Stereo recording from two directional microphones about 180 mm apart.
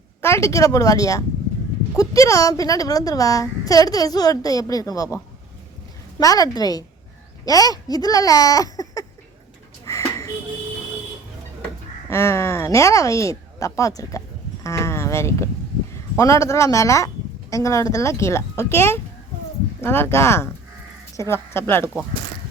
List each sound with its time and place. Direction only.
0.2 s a woman's voice: 15° left (ahead or behind)
9.8 s a sound: 15° left (ahead or behind)
12.0 s speech: 15° left (ahead or behind)